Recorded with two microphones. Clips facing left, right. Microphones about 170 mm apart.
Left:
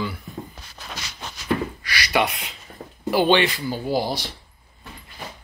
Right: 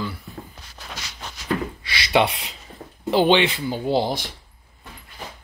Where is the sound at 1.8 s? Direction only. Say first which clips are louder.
Right 3 dB; 25° right (ahead or behind).